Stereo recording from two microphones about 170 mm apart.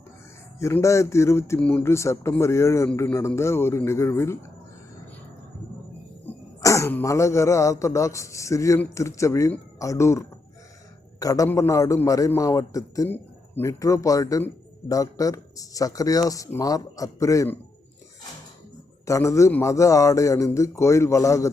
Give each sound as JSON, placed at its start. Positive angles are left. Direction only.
{"t": 0.6, "sound": "speech", "side_deg": 15}
{"t": 6.6, "sound": "a man's voice", "side_deg": 20}
{"t": 19.0, "sound": "speech", "side_deg": 20}